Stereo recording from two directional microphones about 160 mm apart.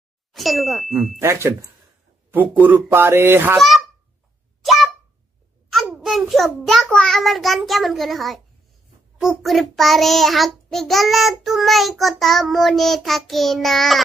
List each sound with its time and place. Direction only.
0.3 s ding: centre (ahead or behind)
1.2 s speech: 15° right (ahead or behind)
3.5 s honk: centre (ahead or behind)
5.7 s a child's voice: centre (ahead or behind)
9.2 s child singing: centre (ahead or behind)